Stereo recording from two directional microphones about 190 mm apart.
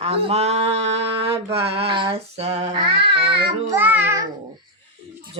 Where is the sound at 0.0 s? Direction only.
30° right (ahead or behind).